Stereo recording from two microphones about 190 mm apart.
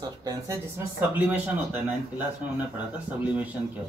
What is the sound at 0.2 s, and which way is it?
Speech, 20° right (ahead or behind).